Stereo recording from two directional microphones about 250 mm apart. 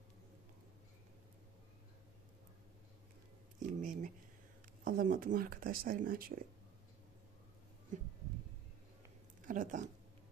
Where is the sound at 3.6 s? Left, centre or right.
Right.